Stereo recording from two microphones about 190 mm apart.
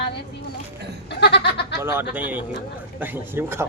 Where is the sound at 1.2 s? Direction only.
60° left (ahead or behind).